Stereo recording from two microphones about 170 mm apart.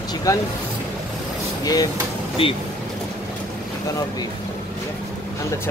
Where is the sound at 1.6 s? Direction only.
20° left (ahead or behind).